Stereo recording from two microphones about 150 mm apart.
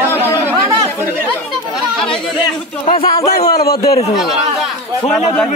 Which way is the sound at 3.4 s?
25° left (ahead or behind).